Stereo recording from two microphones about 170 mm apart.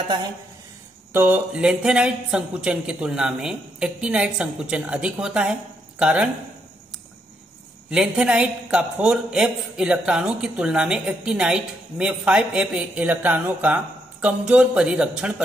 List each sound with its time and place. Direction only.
1.1 s a man's voice: 10° right (ahead or behind)
7.9 s a man's voice: 5° right (ahead or behind)